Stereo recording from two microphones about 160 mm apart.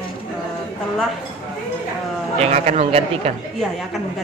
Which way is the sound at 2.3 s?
40° right (ahead or behind).